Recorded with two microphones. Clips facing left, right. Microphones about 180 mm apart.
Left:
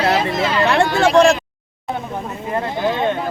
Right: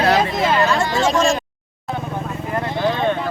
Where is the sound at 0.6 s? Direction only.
65° left (ahead or behind).